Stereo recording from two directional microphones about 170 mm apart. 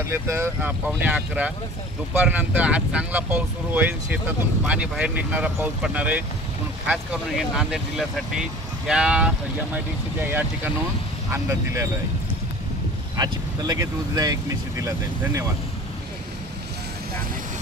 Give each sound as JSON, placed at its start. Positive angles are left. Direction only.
{"t": 0.0, "sound": "speech", "side_deg": -15}
{"t": 11.3, "sound": "speech", "side_deg": -15}
{"t": 13.1, "sound": "speech", "side_deg": -20}